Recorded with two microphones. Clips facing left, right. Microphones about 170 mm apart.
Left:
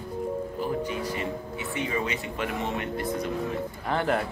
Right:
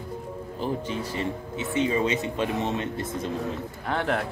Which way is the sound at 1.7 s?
20° right (ahead or behind).